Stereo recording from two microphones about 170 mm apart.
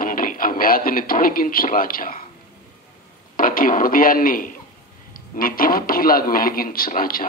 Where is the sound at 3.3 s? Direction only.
55° left (ahead or behind).